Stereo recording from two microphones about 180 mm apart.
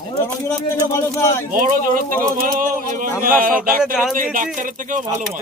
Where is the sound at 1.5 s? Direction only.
50° right (ahead or behind).